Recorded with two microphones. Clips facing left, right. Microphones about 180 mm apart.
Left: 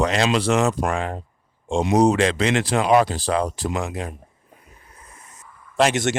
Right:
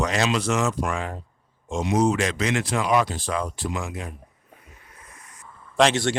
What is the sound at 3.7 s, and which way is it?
Speech, 65° left (ahead or behind).